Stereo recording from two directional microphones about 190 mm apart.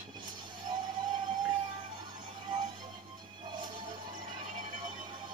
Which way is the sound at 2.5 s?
25° right (ahead or behind).